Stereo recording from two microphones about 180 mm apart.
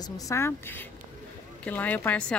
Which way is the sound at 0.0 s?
20° left (ahead or behind).